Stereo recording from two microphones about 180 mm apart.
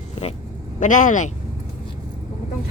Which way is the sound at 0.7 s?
45° left (ahead or behind).